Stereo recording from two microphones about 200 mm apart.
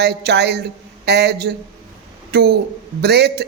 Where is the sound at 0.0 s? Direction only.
55° right (ahead or behind).